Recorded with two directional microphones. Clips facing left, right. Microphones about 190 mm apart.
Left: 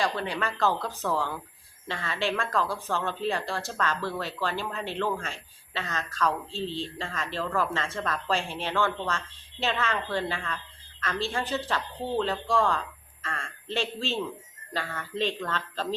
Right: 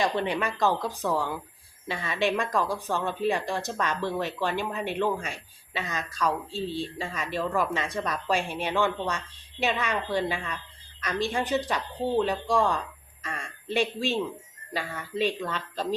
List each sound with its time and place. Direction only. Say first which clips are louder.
0.0 s a man's voice: right 3 dB; 20° right (ahead or behind)